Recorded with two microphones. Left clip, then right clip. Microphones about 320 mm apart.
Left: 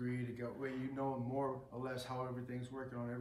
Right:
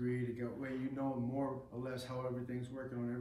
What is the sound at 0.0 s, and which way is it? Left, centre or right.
A man's voice, centre.